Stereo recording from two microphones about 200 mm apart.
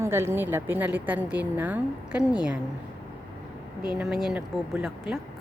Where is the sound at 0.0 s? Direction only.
10° right (ahead or behind).